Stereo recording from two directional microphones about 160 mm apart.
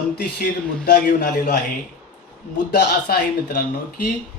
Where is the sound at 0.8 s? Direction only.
65° left (ahead or behind).